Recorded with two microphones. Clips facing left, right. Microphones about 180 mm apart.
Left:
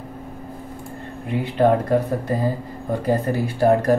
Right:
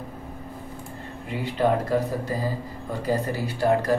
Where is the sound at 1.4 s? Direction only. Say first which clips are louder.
Left 5 dB; 55° left (ahead or behind).